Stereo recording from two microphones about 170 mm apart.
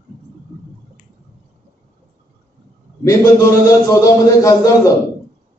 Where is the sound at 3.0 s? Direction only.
20° left (ahead or behind).